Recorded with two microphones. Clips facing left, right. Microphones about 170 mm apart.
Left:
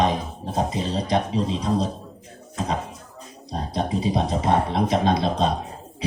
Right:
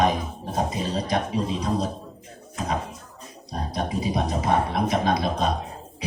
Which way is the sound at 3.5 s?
25° left (ahead or behind).